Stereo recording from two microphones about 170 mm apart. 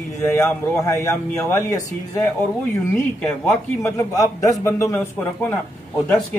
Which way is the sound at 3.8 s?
20° left (ahead or behind).